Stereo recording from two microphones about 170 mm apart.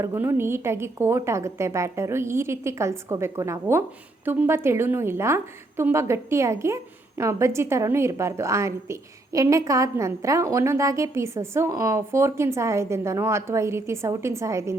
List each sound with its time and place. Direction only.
0.0 s a woman's voice: 15° right (ahead or behind)